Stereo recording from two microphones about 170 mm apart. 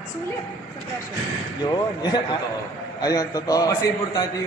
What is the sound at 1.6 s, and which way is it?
A man's voice, 25° left (ahead or behind).